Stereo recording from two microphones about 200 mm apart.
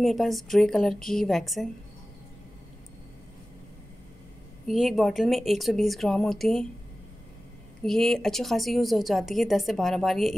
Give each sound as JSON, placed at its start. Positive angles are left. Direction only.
{"t": 0.0, "sound": "speech", "side_deg": 0}
{"t": 4.6, "sound": "speech", "side_deg": 0}
{"t": 7.8, "sound": "speech", "side_deg": 0}